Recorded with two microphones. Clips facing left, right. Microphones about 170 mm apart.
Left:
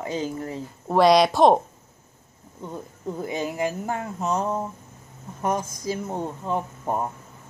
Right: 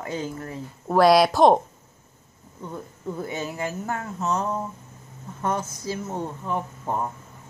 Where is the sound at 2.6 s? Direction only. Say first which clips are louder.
Left 1 dB; 20° left (ahead or behind).